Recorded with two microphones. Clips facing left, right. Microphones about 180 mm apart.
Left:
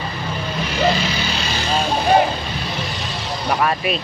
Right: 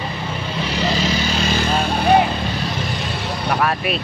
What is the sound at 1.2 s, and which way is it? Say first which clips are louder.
Vehicle: right 4 dB; 45° right (ahead or behind).